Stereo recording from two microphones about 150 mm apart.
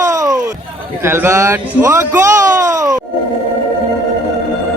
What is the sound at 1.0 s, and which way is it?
Speech, 15° right (ahead or behind).